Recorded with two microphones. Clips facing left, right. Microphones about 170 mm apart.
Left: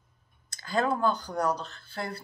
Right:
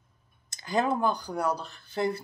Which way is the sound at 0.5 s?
15° right (ahead or behind).